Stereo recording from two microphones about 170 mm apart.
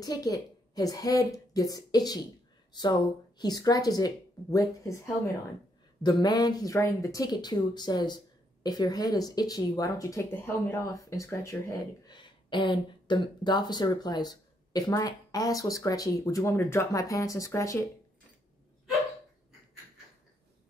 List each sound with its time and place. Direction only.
0.0 s speech: 20° left (ahead or behind)
12.1 s speech: 25° left (ahead or behind)